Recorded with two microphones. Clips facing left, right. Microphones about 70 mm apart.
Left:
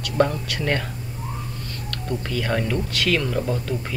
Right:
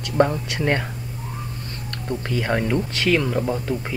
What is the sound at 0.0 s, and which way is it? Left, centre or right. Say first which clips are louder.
Speech: right 2 dB; right.